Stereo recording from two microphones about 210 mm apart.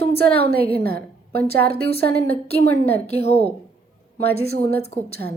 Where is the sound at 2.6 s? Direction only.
30° left (ahead or behind).